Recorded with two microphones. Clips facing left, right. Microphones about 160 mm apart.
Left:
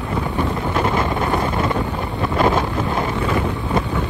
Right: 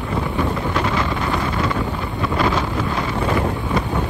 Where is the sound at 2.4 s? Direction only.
25° left (ahead or behind).